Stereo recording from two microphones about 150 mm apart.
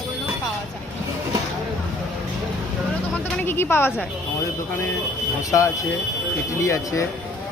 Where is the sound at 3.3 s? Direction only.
15° left (ahead or behind).